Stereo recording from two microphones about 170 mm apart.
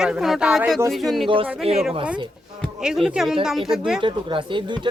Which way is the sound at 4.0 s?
30° right (ahead or behind).